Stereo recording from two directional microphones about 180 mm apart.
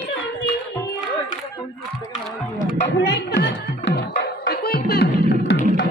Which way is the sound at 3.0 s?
70° left (ahead or behind).